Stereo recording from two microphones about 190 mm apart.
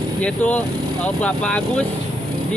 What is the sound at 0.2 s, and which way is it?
Speech, 5° left (ahead or behind).